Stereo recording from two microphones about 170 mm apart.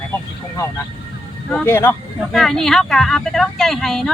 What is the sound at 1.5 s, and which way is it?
Speech, 10° left (ahead or behind).